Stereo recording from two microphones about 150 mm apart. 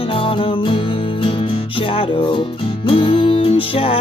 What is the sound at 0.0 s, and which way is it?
Music, 35° left (ahead or behind).